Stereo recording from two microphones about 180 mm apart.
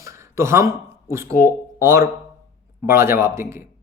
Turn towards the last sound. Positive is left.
turn(degrees=-15)  # may be behind; listen again after turning